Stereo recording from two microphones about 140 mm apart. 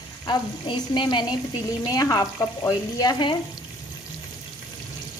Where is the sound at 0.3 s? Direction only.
35° left (ahead or behind).